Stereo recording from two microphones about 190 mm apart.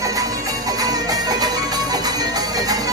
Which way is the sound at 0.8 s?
20° right (ahead or behind).